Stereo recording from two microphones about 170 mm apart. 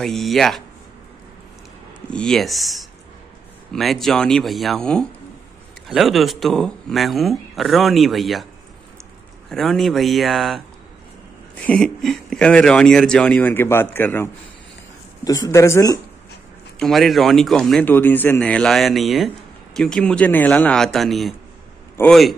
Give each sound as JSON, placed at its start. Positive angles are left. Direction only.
{"t": 0.0, "sound": "speech", "side_deg": 0}
{"t": 2.0, "sound": "speech", "side_deg": 5}
{"t": 9.5, "sound": "speech", "side_deg": 0}
{"t": 16.8, "sound": "a man's voice", "side_deg": 0}